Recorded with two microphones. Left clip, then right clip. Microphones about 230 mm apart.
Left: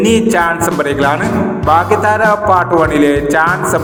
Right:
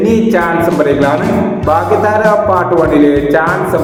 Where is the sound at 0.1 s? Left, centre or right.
Left.